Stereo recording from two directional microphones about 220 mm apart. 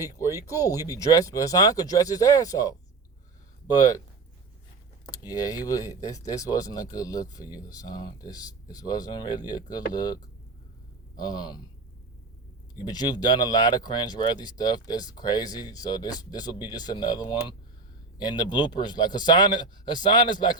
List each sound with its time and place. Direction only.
0.0 s speech: 15° left (ahead or behind)
3.8 s speech: 15° left (ahead or behind)
5.1 s speech: 15° left (ahead or behind)
11.2 s speech: 20° left (ahead or behind)
12.8 s speech: 20° left (ahead or behind)